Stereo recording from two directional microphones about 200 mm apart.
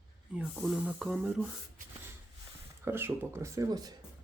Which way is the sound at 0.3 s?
5° right (ahead or behind).